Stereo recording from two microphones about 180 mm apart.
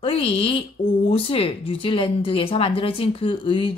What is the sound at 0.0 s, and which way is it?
Speech, 30° left (ahead or behind).